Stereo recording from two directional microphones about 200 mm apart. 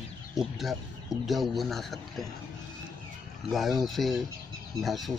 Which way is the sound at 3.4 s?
Centre (ahead or behind).